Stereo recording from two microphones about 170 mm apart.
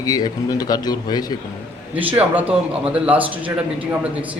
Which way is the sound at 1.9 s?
10° right (ahead or behind).